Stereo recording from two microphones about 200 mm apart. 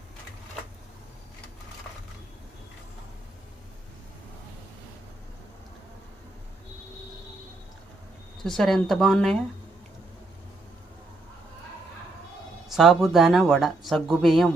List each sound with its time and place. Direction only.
8.4 s speech: centre (ahead or behind)
12.6 s speech: centre (ahead or behind)